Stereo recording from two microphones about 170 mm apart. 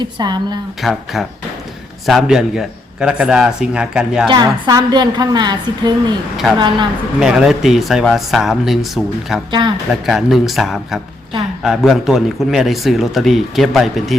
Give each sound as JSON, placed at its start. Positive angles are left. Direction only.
{"t": 0.0, "sound": "a woman's voice", "side_deg": -25}
{"t": 0.8, "sound": "a man's voice", "side_deg": 0}
{"t": 4.3, "sound": "a woman's voice", "side_deg": -25}
{"t": 7.2, "sound": "a man's voice", "side_deg": -5}
{"t": 9.5, "sound": "a woman's voice", "side_deg": -25}
{"t": 9.9, "sound": "a man's voice", "side_deg": 0}